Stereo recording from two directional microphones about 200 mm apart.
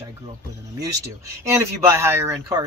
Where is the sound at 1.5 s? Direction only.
15° right (ahead or behind).